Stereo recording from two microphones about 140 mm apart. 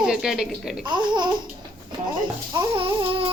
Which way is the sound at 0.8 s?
30° right (ahead or behind).